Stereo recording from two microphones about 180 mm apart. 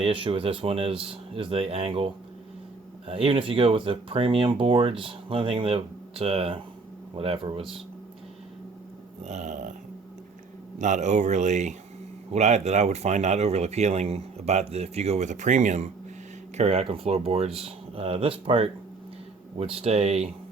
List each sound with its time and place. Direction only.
0.0 s speech: 30° right (ahead or behind)
3.1 s speech: 30° right (ahead or behind)
9.2 s speech: 40° right (ahead or behind)
10.8 s speech: 40° right (ahead or behind)